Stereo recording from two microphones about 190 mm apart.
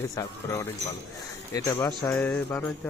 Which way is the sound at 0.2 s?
15° left (ahead or behind).